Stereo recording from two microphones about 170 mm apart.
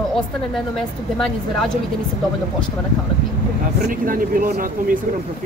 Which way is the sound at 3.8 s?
55° right (ahead or behind).